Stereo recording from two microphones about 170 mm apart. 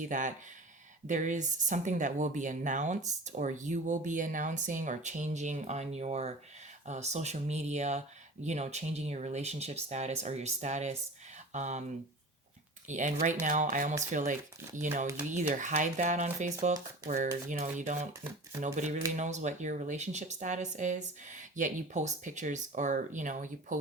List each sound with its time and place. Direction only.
0.1 s speech: 50° right (ahead or behind)
12.9 s speech: 45° right (ahead or behind)